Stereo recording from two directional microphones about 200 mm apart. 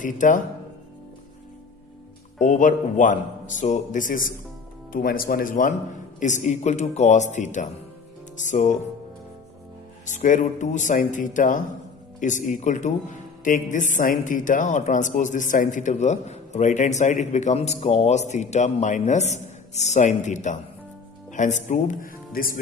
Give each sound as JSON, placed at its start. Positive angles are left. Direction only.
{"t": 0.0, "sound": "a man's voice", "side_deg": 40}
{"t": 2.3, "sound": "a man's voice", "side_deg": 40}
{"t": 10.0, "sound": "a man's voice", "side_deg": 40}